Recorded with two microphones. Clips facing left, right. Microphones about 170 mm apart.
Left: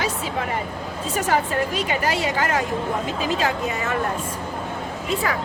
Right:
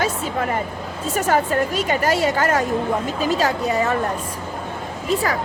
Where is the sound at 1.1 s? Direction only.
45° right (ahead or behind).